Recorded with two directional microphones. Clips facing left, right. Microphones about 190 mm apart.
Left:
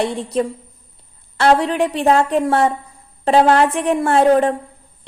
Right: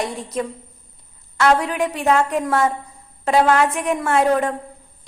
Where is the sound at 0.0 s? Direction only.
30° left (ahead or behind).